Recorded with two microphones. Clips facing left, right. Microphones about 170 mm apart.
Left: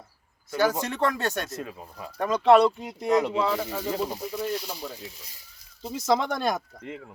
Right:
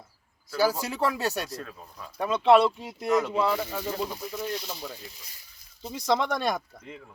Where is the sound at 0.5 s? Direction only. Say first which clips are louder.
Left 1 dB; 10° right (ahead or behind).